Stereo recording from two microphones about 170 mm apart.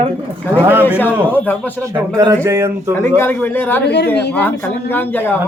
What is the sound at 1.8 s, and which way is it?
Speech, 20° right (ahead or behind).